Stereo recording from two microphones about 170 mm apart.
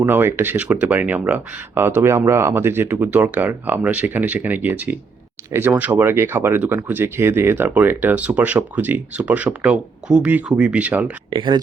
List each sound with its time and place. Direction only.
0.0 s speech: 15° right (ahead or behind)
11.3 s speech: 25° right (ahead or behind)